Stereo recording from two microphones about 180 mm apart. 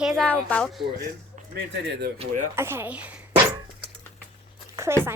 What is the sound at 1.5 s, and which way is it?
Speech, 65° right (ahead or behind).